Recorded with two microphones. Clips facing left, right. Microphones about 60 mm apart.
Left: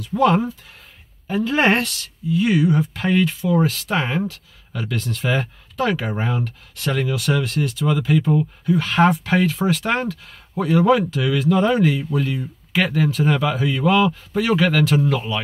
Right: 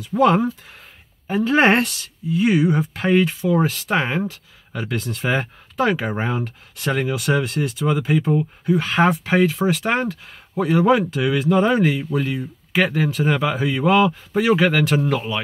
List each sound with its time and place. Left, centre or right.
0.1 s speech: right